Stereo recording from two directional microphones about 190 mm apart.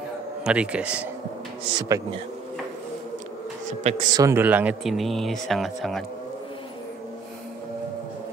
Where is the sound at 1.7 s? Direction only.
20° right (ahead or behind).